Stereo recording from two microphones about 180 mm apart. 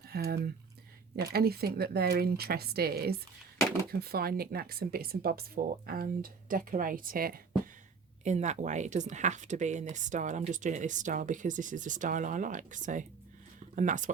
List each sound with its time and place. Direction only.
0.1 s speech: 60° right (ahead or behind)
8.2 s speech: 40° right (ahead or behind)